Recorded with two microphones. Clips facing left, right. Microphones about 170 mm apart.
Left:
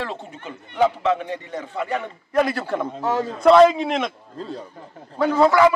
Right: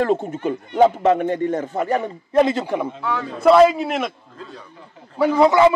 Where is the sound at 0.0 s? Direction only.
50° right (ahead or behind).